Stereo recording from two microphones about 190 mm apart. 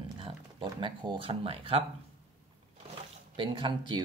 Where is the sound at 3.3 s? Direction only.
25° right (ahead or behind).